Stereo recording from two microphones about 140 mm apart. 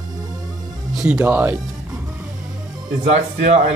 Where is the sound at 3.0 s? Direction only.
55° right (ahead or behind).